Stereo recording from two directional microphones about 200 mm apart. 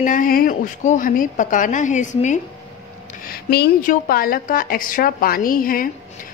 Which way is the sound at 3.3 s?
50° left (ahead or behind).